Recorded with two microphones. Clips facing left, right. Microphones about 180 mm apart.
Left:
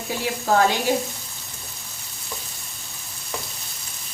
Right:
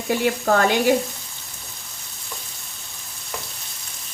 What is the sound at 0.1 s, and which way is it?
Sizzle, 60° right (ahead or behind).